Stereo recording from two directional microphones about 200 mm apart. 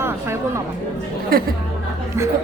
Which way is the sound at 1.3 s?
50° right (ahead or behind).